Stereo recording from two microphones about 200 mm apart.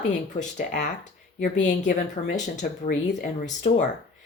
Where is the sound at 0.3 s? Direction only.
40° left (ahead or behind).